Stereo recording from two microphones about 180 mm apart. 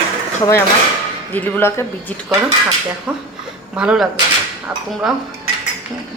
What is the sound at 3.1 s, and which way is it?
Speech, 10° right (ahead or behind).